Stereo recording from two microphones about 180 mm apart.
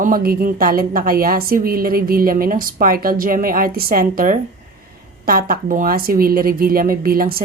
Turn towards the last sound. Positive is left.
turn(degrees=-55)  # may be behind; listen again after turning